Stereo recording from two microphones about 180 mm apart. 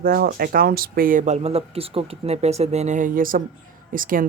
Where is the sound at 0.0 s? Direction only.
55° right (ahead or behind).